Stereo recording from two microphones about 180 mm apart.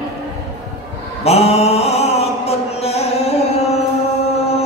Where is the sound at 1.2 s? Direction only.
35° left (ahead or behind).